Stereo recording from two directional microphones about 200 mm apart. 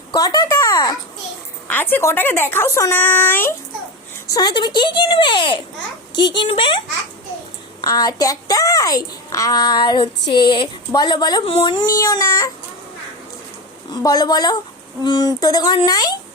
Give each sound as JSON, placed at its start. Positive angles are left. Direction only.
{"t": 0.1, "sound": "a sound", "side_deg": 20}
{"t": 1.7, "sound": "speech", "side_deg": 10}
{"t": 4.4, "sound": "a child's voice", "side_deg": 20}
{"t": 7.8, "sound": "a child's voice", "side_deg": 20}
{"t": 13.9, "sound": "a child's voice", "side_deg": 20}